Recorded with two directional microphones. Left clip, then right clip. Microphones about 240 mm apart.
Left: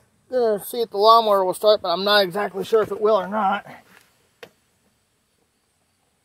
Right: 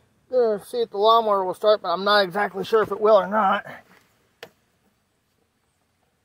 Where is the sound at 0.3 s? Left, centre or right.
Centre; by 3.8 s right.